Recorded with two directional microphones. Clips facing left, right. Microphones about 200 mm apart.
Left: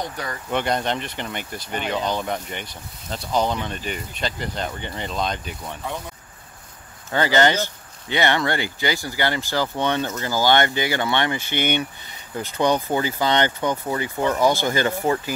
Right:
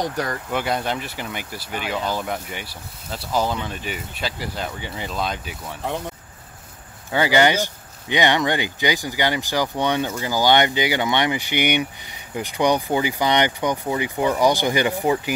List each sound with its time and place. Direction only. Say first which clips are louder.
0.0 s speech: right 5 dB; 45° right (ahead or behind)
0.5 s speech: left 4 dB; 5° right (ahead or behind)
7.1 s speech: right 1 dB; 10° right (ahead or behind)